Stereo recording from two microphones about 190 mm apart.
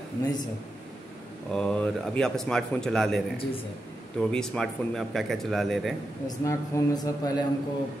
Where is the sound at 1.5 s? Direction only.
5° left (ahead or behind).